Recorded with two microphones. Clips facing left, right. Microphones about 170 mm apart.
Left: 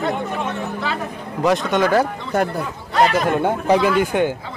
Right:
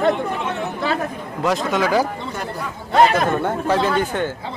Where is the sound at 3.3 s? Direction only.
15° left (ahead or behind).